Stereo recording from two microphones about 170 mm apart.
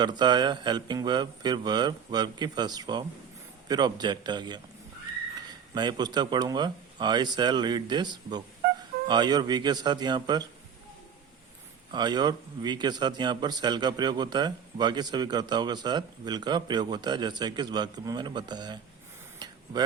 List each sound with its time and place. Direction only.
0.0 s a man's voice: 25° right (ahead or behind)
5.7 s a man's voice: 25° right (ahead or behind)
11.9 s a man's voice: 25° right (ahead or behind)